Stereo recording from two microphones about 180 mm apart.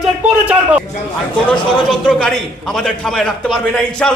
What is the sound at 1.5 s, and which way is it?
A man's voice, 5° left (ahead or behind).